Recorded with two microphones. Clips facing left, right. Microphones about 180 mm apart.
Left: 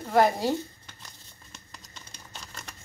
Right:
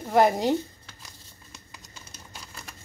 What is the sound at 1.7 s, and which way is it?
Typing, 5° right (ahead or behind).